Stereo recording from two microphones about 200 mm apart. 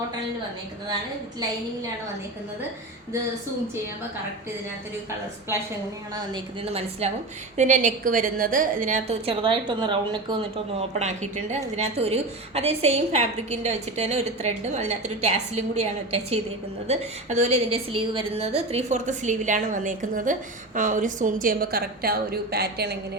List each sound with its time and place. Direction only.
6.1 s a woman's voice: 25° right (ahead or behind)
7.5 s a woman's voice: 35° right (ahead or behind)
10.8 s a woman's voice: 35° right (ahead or behind); by 23.0 s 55° right (ahead or behind)